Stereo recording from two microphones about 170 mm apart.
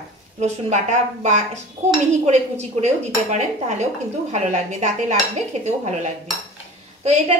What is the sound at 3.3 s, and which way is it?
A woman's voice, 40° right (ahead or behind).